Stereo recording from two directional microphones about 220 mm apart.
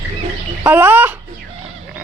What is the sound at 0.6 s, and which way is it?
Bird, 10° right (ahead or behind).